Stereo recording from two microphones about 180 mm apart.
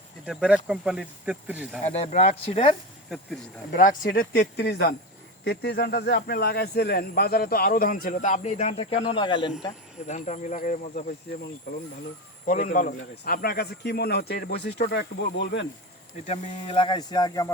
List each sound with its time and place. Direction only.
0.3 s speech: 5° right (ahead or behind)
1.8 s speech: 40° left (ahead or behind)
3.7 s speech: 50° left (ahead or behind); by 9.5 s 25° left (ahead or behind)
10.1 s speech: 40° left (ahead or behind)
12.5 s speech: 45° left (ahead or behind); by 15.6 s 75° left (ahead or behind)
16.2 s speech: 30° left (ahead or behind)